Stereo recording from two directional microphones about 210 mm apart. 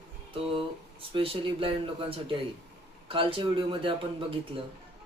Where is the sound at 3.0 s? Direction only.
25° right (ahead or behind).